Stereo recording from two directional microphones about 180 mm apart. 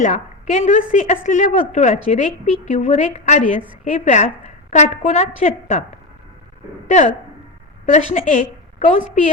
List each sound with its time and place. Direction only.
0.0 s a woman's voice: 40° left (ahead or behind)
6.8 s a woman's voice: 40° left (ahead or behind)